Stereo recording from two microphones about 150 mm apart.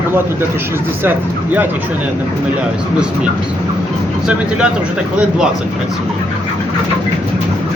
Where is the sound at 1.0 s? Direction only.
15° right (ahead or behind).